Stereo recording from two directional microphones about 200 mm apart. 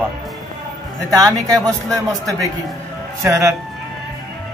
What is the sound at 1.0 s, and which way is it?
A man's voice, 15° right (ahead or behind).